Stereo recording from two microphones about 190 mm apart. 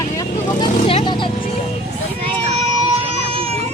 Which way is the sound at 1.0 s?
25° left (ahead or behind).